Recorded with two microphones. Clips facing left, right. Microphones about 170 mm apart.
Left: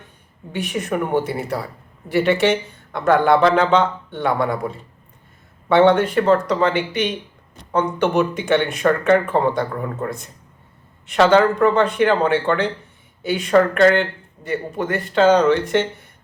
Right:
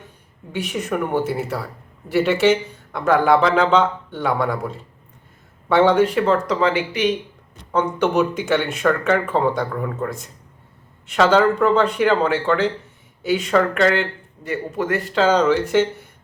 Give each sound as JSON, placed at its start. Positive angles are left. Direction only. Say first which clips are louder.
{"t": 0.7, "sound": "speech", "louder": "left 1 dB", "side_deg": -5}
{"t": 11.1, "sound": "speech", "louder": "left 1 dB", "side_deg": 0}